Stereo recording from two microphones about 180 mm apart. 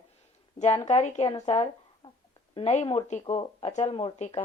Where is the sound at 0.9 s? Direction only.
40° left (ahead or behind).